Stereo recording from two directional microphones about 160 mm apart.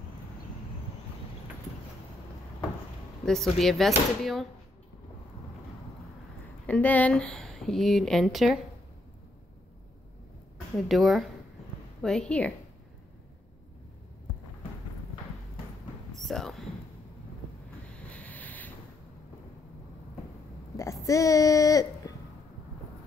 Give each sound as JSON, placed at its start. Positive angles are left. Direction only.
{"t": 3.3, "sound": "speech", "side_deg": 0}
{"t": 6.6, "sound": "speech", "side_deg": 10}
{"t": 10.9, "sound": "speech", "side_deg": 0}
{"t": 16.2, "sound": "a sound", "side_deg": 0}
{"t": 18.1, "sound": "ocean", "side_deg": 10}
{"t": 20.7, "sound": "speech", "side_deg": 20}